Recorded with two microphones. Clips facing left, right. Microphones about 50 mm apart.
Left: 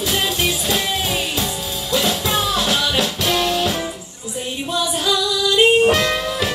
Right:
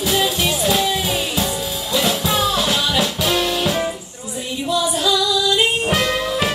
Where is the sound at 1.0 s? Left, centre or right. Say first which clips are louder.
Right 1 dB; centre.